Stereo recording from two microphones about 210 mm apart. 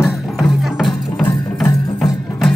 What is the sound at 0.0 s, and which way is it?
Music, centre (ahead or behind).